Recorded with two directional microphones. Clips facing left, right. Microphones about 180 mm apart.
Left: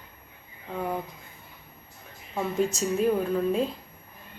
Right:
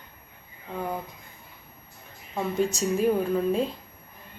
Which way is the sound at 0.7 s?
Centre (ahead or behind).